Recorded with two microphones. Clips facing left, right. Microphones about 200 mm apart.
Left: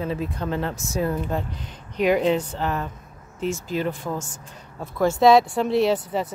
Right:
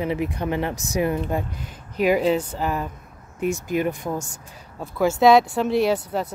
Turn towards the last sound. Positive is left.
turn(degrees=0)  # may be behind; listen again after turning